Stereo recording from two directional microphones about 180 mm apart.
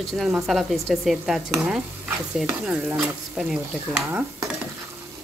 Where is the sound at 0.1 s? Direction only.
Centre (ahead or behind).